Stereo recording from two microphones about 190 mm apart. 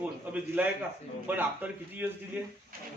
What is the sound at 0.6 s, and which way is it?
A man's voice, 5° right (ahead or behind).